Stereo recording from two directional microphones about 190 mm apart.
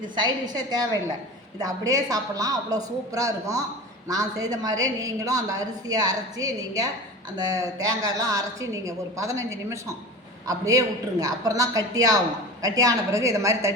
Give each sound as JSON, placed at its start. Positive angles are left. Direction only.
{"t": 0.2, "sound": "a woman's voice", "side_deg": -20}